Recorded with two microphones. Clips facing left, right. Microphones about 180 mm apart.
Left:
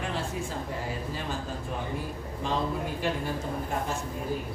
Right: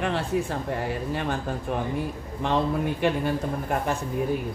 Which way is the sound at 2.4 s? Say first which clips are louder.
Right 6 dB; 65° right (ahead or behind).